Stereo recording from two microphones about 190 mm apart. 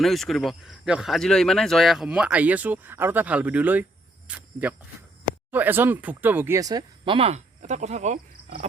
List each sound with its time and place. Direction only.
0.0 s speech: centre (ahead or behind)
4.3 s cricket: 5° right (ahead or behind)
5.5 s speech: 10° right (ahead or behind); by 8.6 s 35° right (ahead or behind)